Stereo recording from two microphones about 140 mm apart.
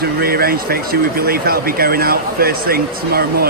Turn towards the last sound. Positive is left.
turn(degrees=-90)